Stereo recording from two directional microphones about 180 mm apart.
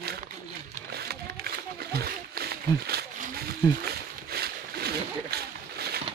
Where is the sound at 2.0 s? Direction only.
60° right (ahead or behind).